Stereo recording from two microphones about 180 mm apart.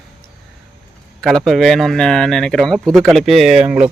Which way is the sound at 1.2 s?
Centre (ahead or behind).